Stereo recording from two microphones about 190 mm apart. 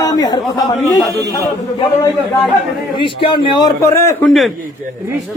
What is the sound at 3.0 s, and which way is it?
A man's voice, 25° left (ahead or behind).